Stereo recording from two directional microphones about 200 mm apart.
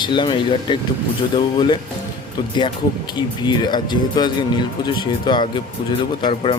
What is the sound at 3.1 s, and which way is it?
Speech, 20° left (ahead or behind).